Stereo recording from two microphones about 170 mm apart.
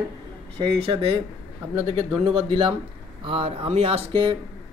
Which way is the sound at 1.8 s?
30° right (ahead or behind).